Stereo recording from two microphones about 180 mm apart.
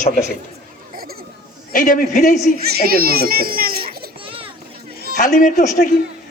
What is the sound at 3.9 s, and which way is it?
Children playing, 55° right (ahead or behind).